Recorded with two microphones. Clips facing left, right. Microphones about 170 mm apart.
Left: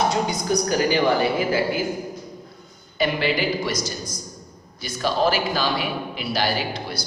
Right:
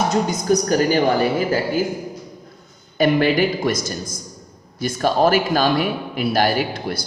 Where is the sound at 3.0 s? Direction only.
50° right (ahead or behind).